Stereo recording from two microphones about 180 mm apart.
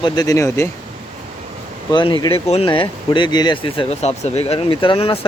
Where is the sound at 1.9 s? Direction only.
25° left (ahead or behind).